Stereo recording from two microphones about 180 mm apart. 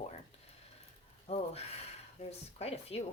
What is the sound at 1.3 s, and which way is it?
Speech, 40° left (ahead or behind).